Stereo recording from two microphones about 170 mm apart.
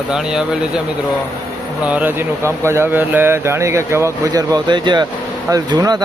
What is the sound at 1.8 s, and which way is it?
Speech, 10° right (ahead or behind).